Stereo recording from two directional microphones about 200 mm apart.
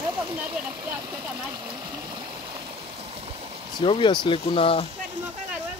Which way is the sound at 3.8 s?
25° left (ahead or behind).